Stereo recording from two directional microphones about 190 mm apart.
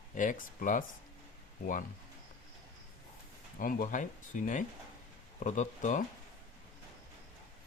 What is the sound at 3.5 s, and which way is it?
Speech, 45° left (ahead or behind).